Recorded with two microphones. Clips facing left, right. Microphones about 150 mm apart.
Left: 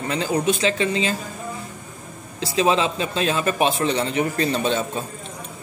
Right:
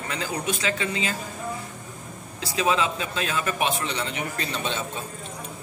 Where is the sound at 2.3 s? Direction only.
25° left (ahead or behind).